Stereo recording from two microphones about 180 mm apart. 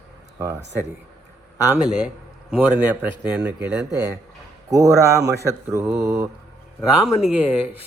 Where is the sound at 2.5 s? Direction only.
10° right (ahead or behind).